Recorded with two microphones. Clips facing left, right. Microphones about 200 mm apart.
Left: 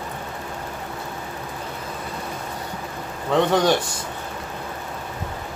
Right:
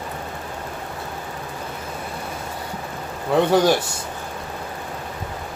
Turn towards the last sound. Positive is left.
turn(degrees=-10)  # may be behind; listen again after turning